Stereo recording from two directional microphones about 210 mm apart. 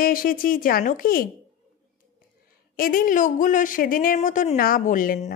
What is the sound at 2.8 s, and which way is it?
A woman's voice, 40° left (ahead or behind).